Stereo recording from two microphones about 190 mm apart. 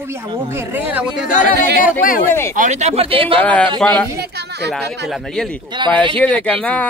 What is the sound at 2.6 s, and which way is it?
Speech, 40° right (ahead or behind).